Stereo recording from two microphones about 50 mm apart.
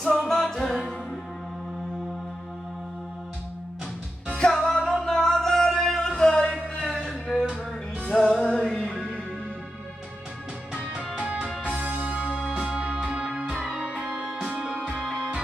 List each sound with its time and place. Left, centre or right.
0.0 s music: centre
4.4 s music: centre
7.3 s music: centre
8.0 s music: centre
8.9 s music: centre
11.0 s music: right
15.0 s music: centre